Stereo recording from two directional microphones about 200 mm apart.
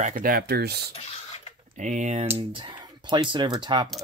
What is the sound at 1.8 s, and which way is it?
Speech, 40° right (ahead or behind).